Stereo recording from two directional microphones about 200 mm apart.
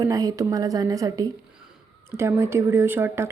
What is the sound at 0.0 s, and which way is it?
Speech, 20° right (ahead or behind).